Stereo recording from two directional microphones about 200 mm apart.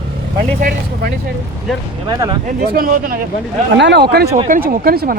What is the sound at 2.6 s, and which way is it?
Speech, 45° right (ahead or behind).